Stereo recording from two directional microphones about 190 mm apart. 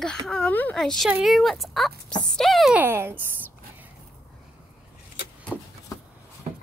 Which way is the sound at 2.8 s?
10° right (ahead or behind).